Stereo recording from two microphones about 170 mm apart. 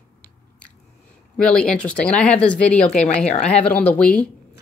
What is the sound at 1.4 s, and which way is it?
Speech, 5° left (ahead or behind).